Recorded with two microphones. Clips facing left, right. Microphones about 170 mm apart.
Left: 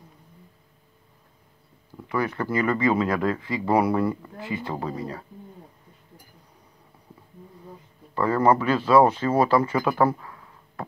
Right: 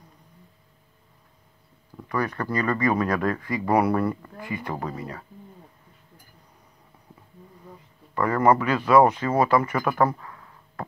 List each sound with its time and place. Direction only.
2.1 s speech: 5° left (ahead or behind)
2.7 s speech: 20° left (ahead or behind)
3.1 s speech: 5° left (ahead or behind)
3.3 s speech: 25° left (ahead or behind)
3.8 s speech: 10° left (ahead or behind)
4.4 s speech: 25° left (ahead or behind)
8.1 s speech: 25° left (ahead or behind)
9.8 s speech: 5° left (ahead or behind)